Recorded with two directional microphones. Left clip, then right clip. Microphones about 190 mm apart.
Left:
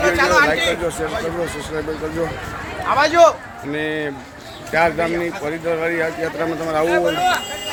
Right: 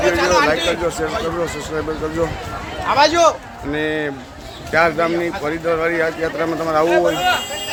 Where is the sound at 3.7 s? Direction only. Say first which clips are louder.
Right 2 dB; 5° right (ahead or behind).